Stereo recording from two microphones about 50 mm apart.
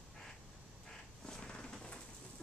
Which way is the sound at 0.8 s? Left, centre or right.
Centre.